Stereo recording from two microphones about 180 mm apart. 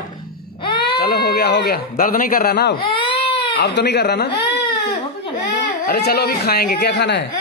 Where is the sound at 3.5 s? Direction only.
70° left (ahead or behind).